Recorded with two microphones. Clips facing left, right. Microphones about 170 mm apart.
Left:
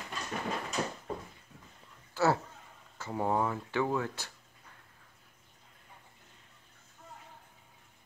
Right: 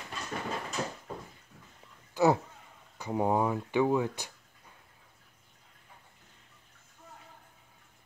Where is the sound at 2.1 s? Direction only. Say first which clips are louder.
Right 3 dB; 15° right (ahead or behind).